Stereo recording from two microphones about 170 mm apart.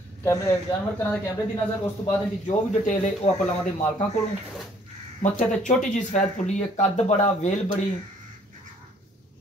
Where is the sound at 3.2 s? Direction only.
35° left (ahead or behind).